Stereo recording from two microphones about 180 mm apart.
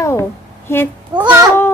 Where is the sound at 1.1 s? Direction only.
25° right (ahead or behind).